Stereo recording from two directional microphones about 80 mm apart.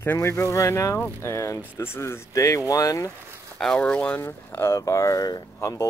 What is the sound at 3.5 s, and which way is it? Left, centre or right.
Speech, centre.